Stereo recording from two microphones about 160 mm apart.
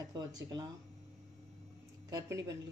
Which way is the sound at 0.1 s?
25° right (ahead or behind).